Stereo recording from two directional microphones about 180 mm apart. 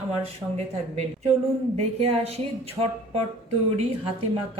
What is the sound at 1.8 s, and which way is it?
Speech, 35° right (ahead or behind).